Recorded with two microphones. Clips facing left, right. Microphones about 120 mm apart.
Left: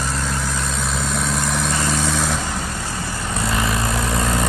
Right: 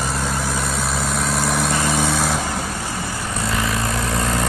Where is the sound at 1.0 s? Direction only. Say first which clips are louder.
Right 1 dB; centre (ahead or behind).